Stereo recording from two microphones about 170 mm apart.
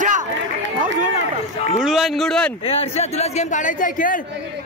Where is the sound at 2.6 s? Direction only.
35° left (ahead or behind); by 4.2 s 55° left (ahead or behind).